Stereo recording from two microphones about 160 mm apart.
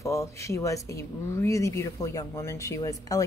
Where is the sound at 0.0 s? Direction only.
20° left (ahead or behind).